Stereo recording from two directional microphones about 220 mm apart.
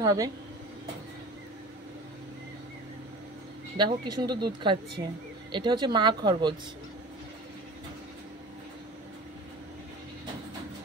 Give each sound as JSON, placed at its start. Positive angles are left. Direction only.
{"t": 0.0, "sound": "speech", "side_deg": -15}
{"t": 3.7, "sound": "speech", "side_deg": -20}